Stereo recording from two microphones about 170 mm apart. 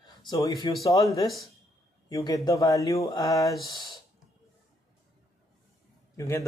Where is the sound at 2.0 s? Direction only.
20° left (ahead or behind).